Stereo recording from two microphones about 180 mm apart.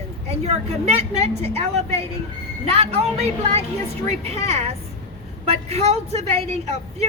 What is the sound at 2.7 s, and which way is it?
Speech, 35° right (ahead or behind).